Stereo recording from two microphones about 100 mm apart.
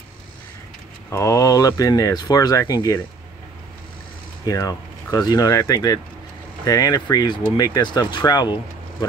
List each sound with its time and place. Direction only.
1.1 s speech: 30° left (ahead or behind)
4.5 s speech: 35° left (ahead or behind)